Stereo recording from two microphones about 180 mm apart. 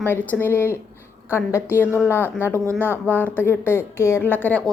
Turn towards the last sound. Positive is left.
turn(degrees=10)  # may be behind; listen again after turning